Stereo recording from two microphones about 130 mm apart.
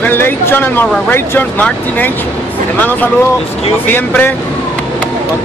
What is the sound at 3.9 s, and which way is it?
Speech, 15° left (ahead or behind).